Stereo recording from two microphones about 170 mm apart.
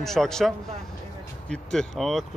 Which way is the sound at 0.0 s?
Centre (ahead or behind).